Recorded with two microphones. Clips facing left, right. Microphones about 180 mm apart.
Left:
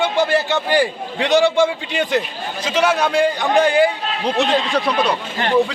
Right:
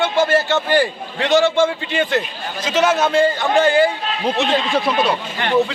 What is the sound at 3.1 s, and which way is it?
Speech, 15° left (ahead or behind).